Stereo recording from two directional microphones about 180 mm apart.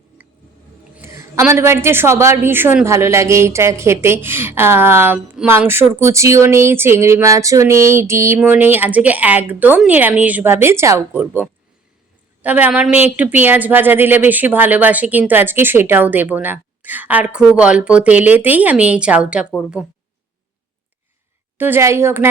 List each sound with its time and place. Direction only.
0.2 s a sound: 10° right (ahead or behind)
0.9 s a woman's voice: 15° right (ahead or behind)
21.6 s a woman's voice: 15° right (ahead or behind)